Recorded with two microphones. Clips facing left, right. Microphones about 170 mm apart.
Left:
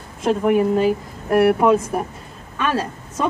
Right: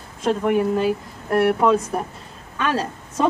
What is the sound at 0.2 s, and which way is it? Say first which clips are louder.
Speech: left 2 dB; 5° left (ahead or behind).